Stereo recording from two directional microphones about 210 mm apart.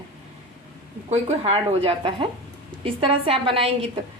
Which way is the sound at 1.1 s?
30° right (ahead or behind).